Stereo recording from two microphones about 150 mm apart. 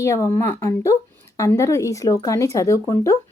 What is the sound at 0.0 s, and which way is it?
A woman's voice, 20° left (ahead or behind).